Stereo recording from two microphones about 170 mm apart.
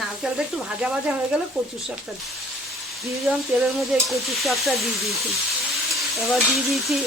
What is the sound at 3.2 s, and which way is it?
Stir, centre (ahead or behind).